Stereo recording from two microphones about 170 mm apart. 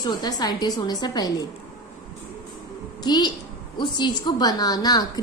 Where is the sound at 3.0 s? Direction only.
25° left (ahead or behind).